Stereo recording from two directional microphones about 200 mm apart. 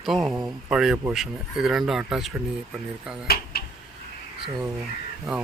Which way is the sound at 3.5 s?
50° left (ahead or behind).